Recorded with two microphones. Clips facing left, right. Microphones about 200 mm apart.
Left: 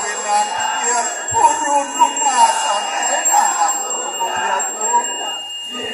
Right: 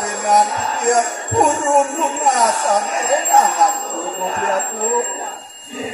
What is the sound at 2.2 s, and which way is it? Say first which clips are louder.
Speech: right 3 dB; 45° right (ahead or behind).